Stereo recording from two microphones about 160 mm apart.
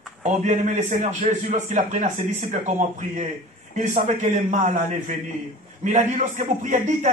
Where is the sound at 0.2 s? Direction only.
45° right (ahead or behind).